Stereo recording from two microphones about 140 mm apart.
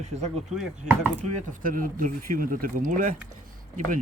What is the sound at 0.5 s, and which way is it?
Speech, 5° right (ahead or behind).